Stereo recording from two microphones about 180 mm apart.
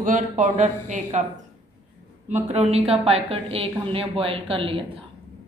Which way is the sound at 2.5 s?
35° right (ahead or behind).